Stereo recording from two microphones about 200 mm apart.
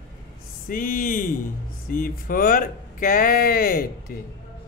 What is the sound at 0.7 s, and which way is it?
Speech, 45° left (ahead or behind).